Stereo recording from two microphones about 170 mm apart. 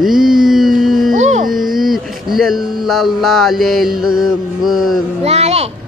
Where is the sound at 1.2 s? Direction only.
45° right (ahead or behind).